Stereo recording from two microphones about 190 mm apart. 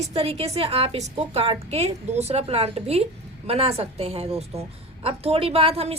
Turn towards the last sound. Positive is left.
turn(degrees=-30)  # may be behind; listen again after turning